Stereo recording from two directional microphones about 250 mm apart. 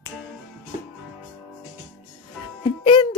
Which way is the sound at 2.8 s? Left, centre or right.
Centre.